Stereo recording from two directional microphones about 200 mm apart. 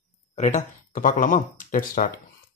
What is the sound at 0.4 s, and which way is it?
Speech, 35° left (ahead or behind).